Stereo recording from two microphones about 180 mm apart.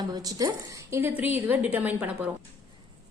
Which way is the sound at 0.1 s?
20° right (ahead or behind).